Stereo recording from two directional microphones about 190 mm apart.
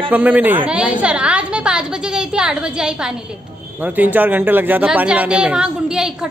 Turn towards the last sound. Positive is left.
turn(degrees=-5)  # may be behind; listen again after turning